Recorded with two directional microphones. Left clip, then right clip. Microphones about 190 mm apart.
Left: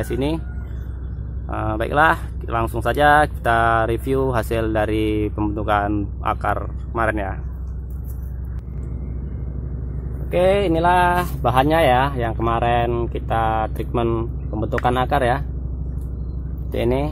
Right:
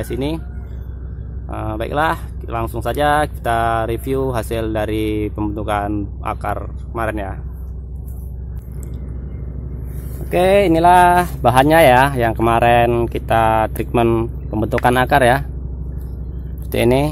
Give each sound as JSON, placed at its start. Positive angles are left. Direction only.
{"t": 0.0, "sound": "speech", "side_deg": -10}
{"t": 1.5, "sound": "speech", "side_deg": -5}
{"t": 10.3, "sound": "speech", "side_deg": -55}
{"t": 16.7, "sound": "speech", "side_deg": -50}